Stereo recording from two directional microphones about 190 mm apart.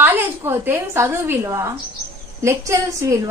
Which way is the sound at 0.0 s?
10° right (ahead or behind).